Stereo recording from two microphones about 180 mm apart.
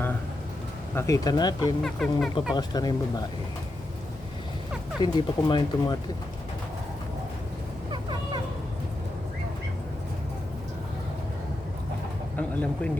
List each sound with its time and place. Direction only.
0.9 s speech: 20° left (ahead or behind)
1.8 s speech: centre (ahead or behind)
2.6 s speech: 20° left (ahead or behind)
5.0 s speech: 25° left (ahead or behind)
12.4 s speech: 5° left (ahead or behind)